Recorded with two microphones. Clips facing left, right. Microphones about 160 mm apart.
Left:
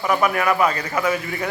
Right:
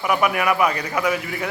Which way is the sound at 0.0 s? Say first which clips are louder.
Left 1 dB; 10° right (ahead or behind).